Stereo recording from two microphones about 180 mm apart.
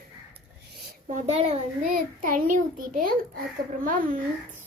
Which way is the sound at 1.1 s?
35° right (ahead or behind).